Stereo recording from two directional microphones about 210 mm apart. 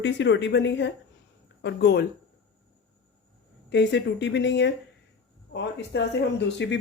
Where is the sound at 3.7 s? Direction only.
55° left (ahead or behind).